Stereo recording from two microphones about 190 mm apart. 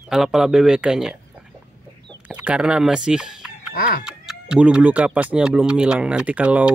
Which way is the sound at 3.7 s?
50° left (ahead or behind).